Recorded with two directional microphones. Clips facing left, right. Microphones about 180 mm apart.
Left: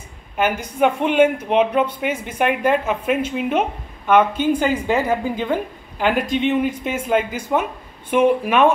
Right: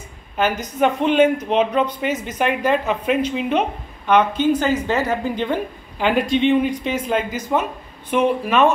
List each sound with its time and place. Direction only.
0.4 s a woman's voice: 10° left (ahead or behind)